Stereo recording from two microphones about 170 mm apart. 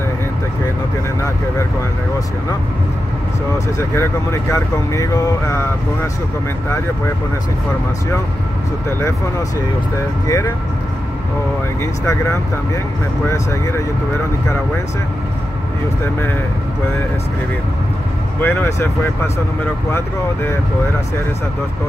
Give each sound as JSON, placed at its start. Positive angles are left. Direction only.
{"t": 3.5, "sound": "speech", "side_deg": 15}
{"t": 10.2, "sound": "speech", "side_deg": 20}
{"t": 18.4, "sound": "speech", "side_deg": 15}